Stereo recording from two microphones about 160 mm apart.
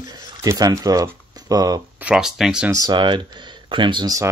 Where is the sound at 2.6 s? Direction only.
25° right (ahead or behind).